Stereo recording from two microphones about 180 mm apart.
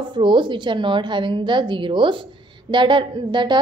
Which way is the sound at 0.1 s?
25° right (ahead or behind).